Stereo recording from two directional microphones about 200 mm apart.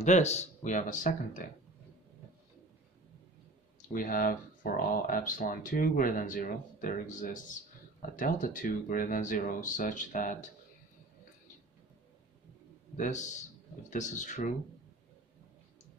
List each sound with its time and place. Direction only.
0.0 s speech: 35° left (ahead or behind)
3.9 s speech: 45° left (ahead or behind)
12.9 s speech: 35° left (ahead or behind)